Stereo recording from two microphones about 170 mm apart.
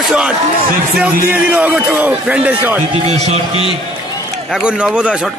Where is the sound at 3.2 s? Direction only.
40° right (ahead or behind).